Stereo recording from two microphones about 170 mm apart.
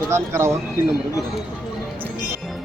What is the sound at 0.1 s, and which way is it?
Speech, 15° right (ahead or behind).